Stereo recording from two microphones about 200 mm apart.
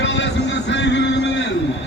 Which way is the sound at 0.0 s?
60° left (ahead or behind).